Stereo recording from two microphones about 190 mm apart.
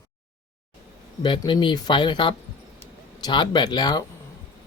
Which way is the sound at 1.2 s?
25° left (ahead or behind).